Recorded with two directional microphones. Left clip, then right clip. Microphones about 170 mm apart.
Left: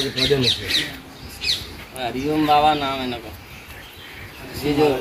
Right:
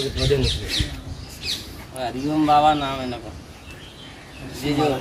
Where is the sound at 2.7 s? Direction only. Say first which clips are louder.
Even; 20° right (ahead or behind).